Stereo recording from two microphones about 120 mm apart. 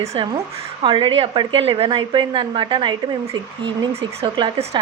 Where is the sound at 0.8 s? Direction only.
45° right (ahead or behind).